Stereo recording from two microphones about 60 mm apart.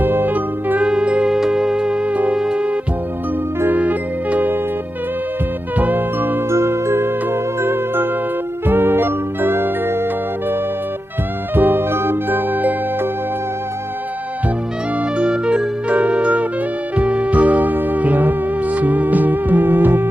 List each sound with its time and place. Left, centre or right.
0.0 s music: right
0.9 s music: centre
2.3 s music: centre
3.7 s music: right
5.7 s music: right
6.5 s music: right
11.5 s music: right
15.2 s music: centre; by 20.1 s right